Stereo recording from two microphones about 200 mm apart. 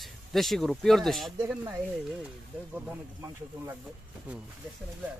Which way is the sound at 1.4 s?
10° right (ahead or behind).